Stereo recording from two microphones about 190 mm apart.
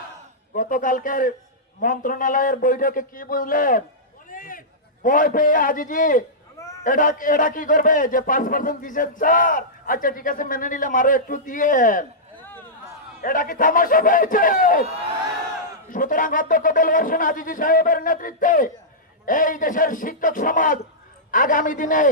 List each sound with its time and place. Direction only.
0.6 s a man's voice: 45° left (ahead or behind)
13.2 s a man's voice: 45° left (ahead or behind)
15.9 s a man's voice: 45° left (ahead or behind)